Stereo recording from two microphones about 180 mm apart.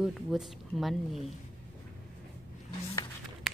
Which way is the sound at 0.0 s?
Centre (ahead or behind).